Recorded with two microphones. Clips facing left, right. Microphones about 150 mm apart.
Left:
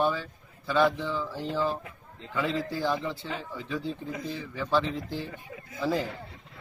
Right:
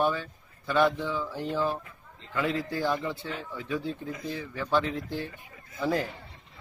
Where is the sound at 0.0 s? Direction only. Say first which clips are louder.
Even; centre (ahead or behind).